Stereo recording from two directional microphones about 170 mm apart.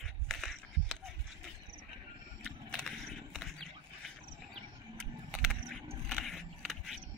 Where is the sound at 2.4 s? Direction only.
5° left (ahead or behind).